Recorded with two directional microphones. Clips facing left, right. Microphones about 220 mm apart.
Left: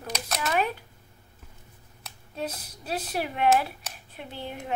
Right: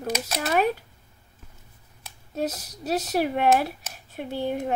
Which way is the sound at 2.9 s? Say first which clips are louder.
Right 6 dB; 40° right (ahead or behind).